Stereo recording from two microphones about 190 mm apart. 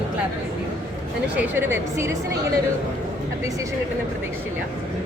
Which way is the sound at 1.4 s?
10° right (ahead or behind).